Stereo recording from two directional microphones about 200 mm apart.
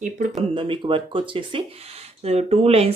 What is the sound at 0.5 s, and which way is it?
Speech, 25° right (ahead or behind).